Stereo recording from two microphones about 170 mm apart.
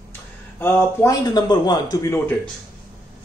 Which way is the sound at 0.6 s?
15° left (ahead or behind).